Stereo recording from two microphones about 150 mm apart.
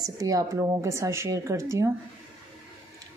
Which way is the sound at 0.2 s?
25° right (ahead or behind).